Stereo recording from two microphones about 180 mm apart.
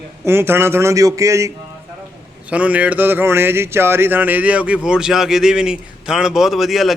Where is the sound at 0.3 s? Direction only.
15° right (ahead or behind).